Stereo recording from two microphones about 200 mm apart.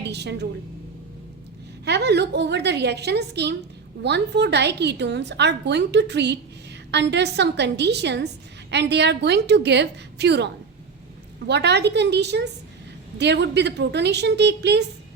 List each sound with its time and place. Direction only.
0.1 s a woman's voice: 55° right (ahead or behind)
1.8 s a woman's voice: 60° right (ahead or behind)